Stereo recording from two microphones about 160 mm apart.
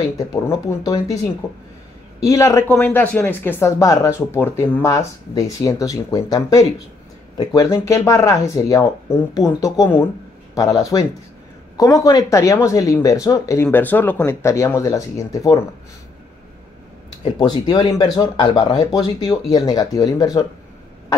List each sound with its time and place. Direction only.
0.7 s speech: 20° left (ahead or behind)
2.2 s speech: 20° left (ahead or behind)
17.2 s speech: 25° left (ahead or behind)